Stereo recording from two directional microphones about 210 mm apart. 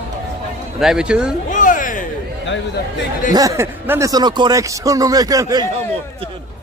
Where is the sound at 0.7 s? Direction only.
5° right (ahead or behind).